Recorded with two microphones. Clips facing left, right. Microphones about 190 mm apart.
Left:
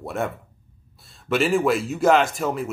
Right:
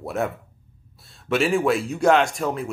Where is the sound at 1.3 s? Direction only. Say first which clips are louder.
Even; centre (ahead or behind).